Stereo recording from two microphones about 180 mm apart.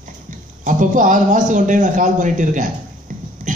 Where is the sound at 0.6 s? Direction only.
45° right (ahead or behind).